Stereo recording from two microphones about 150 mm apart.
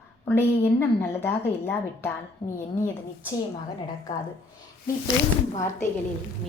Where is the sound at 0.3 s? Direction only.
15° left (ahead or behind).